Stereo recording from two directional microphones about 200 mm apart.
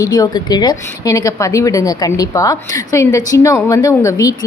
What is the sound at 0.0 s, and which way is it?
A woman's voice, 20° left (ahead or behind).